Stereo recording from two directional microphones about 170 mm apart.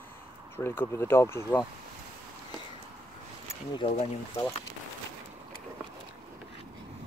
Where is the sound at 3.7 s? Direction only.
35° left (ahead or behind).